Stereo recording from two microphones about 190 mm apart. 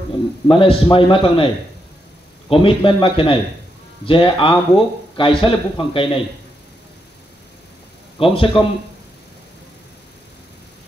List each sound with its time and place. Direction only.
0.5 s speech: 25° left (ahead or behind)
2.5 s speech: 30° left (ahead or behind)
8.2 s speech: 30° left (ahead or behind)